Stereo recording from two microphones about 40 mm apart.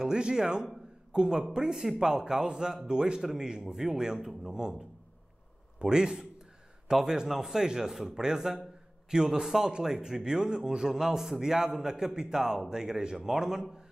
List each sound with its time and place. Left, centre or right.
0.0 s a man's voice: centre